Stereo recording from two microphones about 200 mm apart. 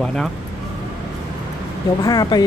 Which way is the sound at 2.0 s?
20° left (ahead or behind).